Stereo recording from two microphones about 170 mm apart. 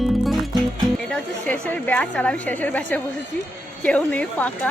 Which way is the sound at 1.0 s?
10° left (ahead or behind).